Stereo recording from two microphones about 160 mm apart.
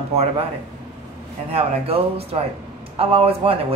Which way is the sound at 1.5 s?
40° right (ahead or behind).